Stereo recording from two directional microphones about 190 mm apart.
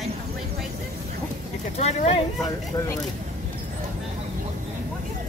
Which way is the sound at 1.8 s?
30° left (ahead or behind).